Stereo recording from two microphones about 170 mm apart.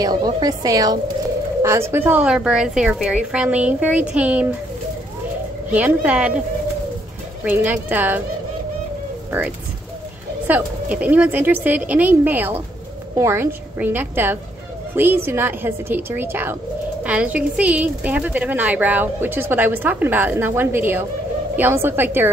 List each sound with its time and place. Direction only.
0.0 s a woman's voice: 25° right (ahead or behind); by 4.5 s 10° right (ahead or behind)
5.7 s speech: 10° right (ahead or behind)
7.4 s speech: 10° right (ahead or behind)
10.4 s speech: 10° right (ahead or behind)